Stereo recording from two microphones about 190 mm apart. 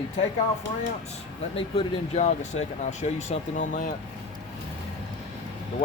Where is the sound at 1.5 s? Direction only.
30° left (ahead or behind).